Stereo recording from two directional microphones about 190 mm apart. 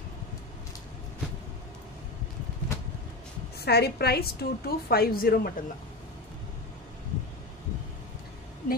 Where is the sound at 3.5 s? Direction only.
55° left (ahead or behind).